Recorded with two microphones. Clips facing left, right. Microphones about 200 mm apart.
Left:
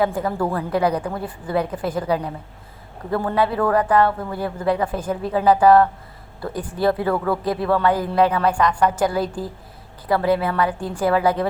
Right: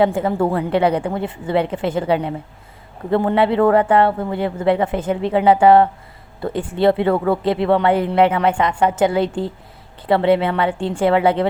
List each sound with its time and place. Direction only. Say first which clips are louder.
0.0 s speech: right 4 dB; 25° right (ahead or behind)